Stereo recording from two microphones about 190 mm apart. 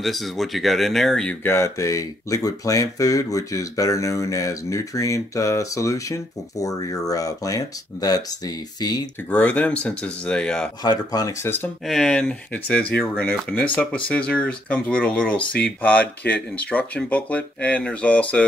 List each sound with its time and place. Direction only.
0.0 s speech: centre (ahead or behind); by 8.2 s 20° left (ahead or behind)
9.3 s speech: 5° left (ahead or behind)
10.8 s speech: 20° left (ahead or behind)
11.9 s speech: 5° left (ahead or behind)